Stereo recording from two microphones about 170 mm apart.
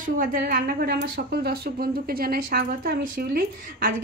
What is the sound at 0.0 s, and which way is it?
A woman's voice, 55° right (ahead or behind).